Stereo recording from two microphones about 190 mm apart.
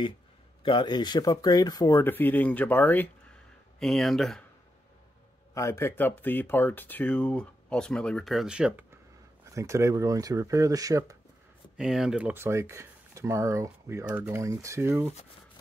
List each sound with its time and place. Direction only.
0.7 s speech: 25° left (ahead or behind); by 4.5 s centre (ahead or behind)
5.5 s speech: 15° left (ahead or behind); by 11.1 s 20° right (ahead or behind)
11.7 s speech: centre (ahead or behind)